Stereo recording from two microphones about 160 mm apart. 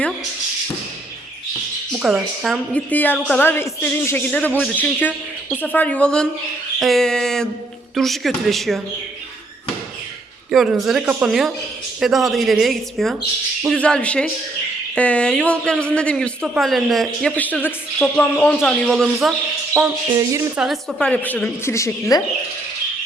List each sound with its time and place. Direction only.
1.9 s a woman's voice: 5° right (ahead or behind)
2.7 s speech: 10° left (ahead or behind)
10.5 s speech: centre (ahead or behind)
20.1 s speech: 20° right (ahead or behind)
20.6 s speech: centre (ahead or behind); by 22.2 s 20° left (ahead or behind)